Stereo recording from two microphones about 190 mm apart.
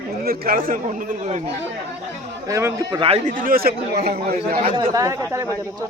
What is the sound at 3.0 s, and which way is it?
Speech, 30° right (ahead or behind).